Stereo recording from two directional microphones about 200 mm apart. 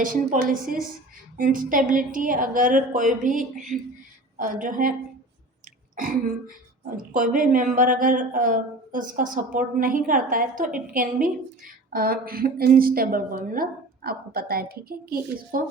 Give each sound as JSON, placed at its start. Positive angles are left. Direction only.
{"t": 0.0, "sound": "a woman's voice", "side_deg": -45}
{"t": 3.2, "sound": "a sound", "side_deg": -40}
{"t": 4.4, "sound": "a woman's voice", "side_deg": -40}
{"t": 6.9, "sound": "a woman's voice", "side_deg": -45}